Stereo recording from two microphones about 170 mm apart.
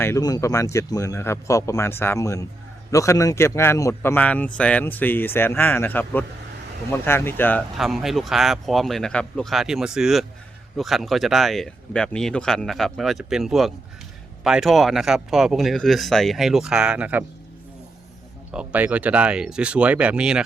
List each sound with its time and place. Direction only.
0.0 s speech: 20° left (ahead or behind)
7.8 s speech: centre (ahead or behind)
18.5 s speech: 10° right (ahead or behind)